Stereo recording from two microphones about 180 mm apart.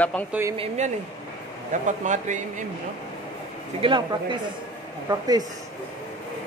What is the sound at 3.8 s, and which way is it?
Speech, 25° right (ahead or behind).